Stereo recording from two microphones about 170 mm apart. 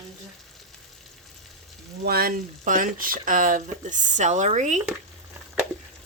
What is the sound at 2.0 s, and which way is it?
Speech, 60° right (ahead or behind).